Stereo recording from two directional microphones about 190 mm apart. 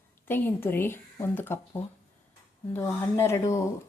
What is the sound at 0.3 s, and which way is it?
Speech, 10° left (ahead or behind).